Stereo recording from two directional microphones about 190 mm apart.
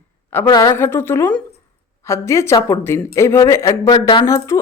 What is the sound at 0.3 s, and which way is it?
A man's voice, 15° left (ahead or behind).